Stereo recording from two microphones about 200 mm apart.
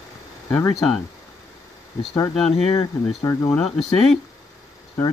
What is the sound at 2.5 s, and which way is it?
Speech, 30° left (ahead or behind).